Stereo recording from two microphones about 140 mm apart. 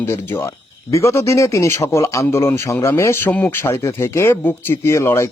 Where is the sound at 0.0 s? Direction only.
20° left (ahead or behind).